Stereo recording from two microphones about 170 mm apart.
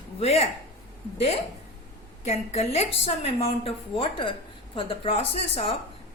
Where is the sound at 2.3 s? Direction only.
40° left (ahead or behind).